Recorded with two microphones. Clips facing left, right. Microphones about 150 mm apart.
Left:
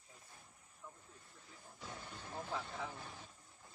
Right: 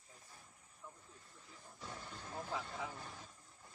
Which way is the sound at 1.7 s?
5° left (ahead or behind).